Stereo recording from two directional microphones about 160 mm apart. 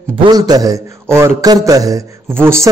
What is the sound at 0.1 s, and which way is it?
A man's voice, 30° right (ahead or behind).